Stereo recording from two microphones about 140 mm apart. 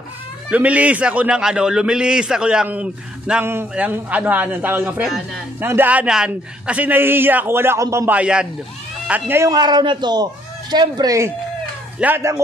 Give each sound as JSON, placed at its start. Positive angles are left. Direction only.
{"t": 0.5, "sound": "a man's voice", "side_deg": -10}
{"t": 5.0, "sound": "a man's voice", "side_deg": 0}
{"t": 5.6, "sound": "a man's voice", "side_deg": -15}
{"t": 8.1, "sound": "a man's voice", "side_deg": -10}
{"t": 9.5, "sound": "a man's voice", "side_deg": -30}